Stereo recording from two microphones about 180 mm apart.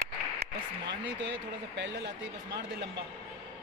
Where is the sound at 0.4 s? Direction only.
75° right (ahead or behind).